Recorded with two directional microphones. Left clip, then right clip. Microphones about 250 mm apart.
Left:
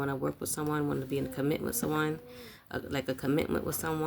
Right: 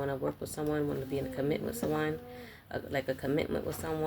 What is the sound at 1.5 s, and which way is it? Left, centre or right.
Speech, left.